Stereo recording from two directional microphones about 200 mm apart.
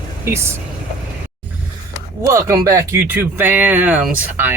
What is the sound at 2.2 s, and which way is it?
Speech, 15° right (ahead or behind).